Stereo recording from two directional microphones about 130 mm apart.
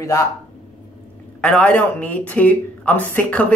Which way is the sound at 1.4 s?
10° left (ahead or behind).